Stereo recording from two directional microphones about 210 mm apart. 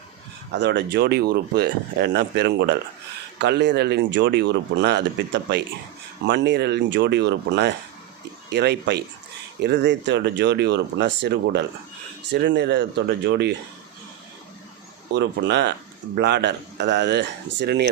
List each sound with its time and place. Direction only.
0.5 s speech: 55° right (ahead or behind)
15.1 s speech: 55° right (ahead or behind)